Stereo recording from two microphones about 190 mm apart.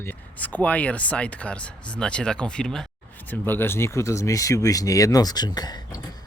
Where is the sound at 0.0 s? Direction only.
10° left (ahead or behind).